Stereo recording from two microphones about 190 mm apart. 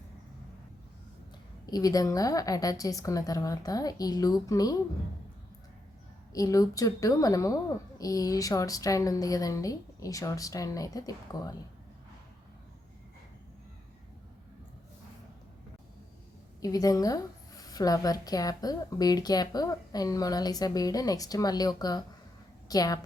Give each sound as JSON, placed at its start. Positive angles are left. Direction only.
{"t": 1.6, "sound": "a woman's voice", "side_deg": 20}
{"t": 6.3, "sound": "a woman's voice", "side_deg": 20}
{"t": 16.6, "sound": "a woman's voice", "side_deg": 20}